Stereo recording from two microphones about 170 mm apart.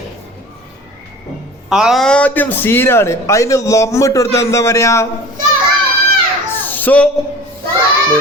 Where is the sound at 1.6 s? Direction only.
5° right (ahead or behind); by 5.1 s 20° left (ahead or behind).